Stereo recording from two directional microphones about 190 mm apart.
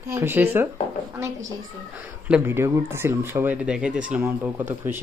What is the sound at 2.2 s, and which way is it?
Speech, 10° right (ahead or behind).